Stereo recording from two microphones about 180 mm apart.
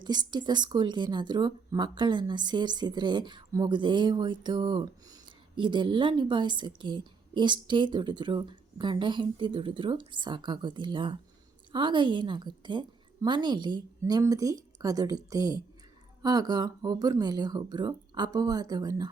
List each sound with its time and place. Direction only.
0.0 s speech: 25° right (ahead or behind)